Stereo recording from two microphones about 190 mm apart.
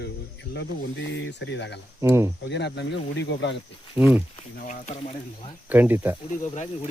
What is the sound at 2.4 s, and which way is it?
Speech, 65° left (ahead or behind).